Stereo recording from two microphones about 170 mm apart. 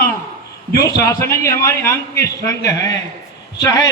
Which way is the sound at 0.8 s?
20° left (ahead or behind).